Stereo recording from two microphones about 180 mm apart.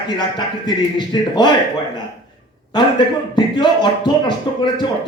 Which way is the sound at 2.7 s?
25° left (ahead or behind).